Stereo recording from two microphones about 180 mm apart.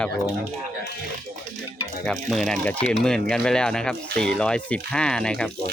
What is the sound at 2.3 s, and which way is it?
Speech, 5° left (ahead or behind).